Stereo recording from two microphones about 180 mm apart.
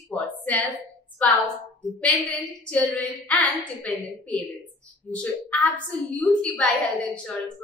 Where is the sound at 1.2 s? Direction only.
5° left (ahead or behind).